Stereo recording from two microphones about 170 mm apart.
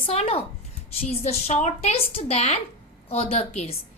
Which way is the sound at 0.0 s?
35° left (ahead or behind).